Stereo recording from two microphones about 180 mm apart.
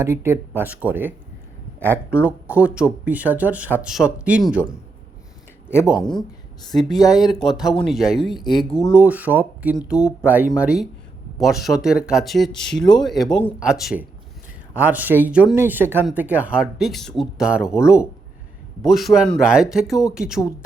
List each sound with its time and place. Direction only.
0.0 s speech: 15° right (ahead or behind)
6.7 s speech: centre (ahead or behind)
8.4 s speech: 25° left (ahead or behind)
8.9 s speech: 10° right (ahead or behind)